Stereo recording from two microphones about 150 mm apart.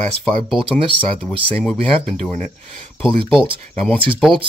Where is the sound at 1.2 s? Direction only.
5° left (ahead or behind).